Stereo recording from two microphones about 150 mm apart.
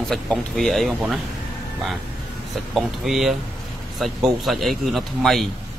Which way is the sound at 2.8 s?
Centre (ahead or behind).